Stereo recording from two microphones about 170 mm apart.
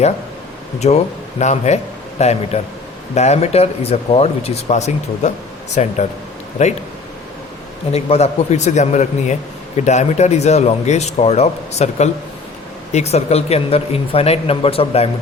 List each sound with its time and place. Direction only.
0.8 s a man's voice: 40° left (ahead or behind)
7.9 s a man's voice: 40° left (ahead or behind)